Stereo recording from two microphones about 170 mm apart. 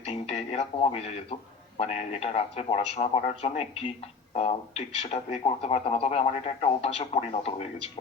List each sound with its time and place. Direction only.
0.1 s a man's voice: 40° left (ahead or behind)